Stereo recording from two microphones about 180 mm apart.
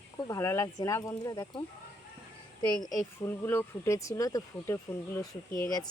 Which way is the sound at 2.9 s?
15° left (ahead or behind).